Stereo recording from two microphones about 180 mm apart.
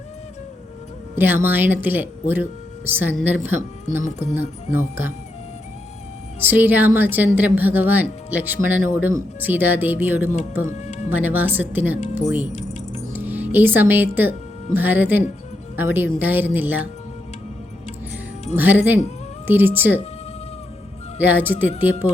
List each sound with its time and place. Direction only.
1.1 s speech: 10° right (ahead or behind)
4.7 s speech: 10° right (ahead or behind)
6.5 s speech: 10° right (ahead or behind)
10.8 s music: 40° left (ahead or behind)
11.1 s speech: 10° right (ahead or behind)
12.5 s music: 40° left (ahead or behind)
13.1 s speech: 10° right (ahead or behind)
18.5 s speech: 10° right (ahead or behind)
21.2 s speech: 10° right (ahead or behind)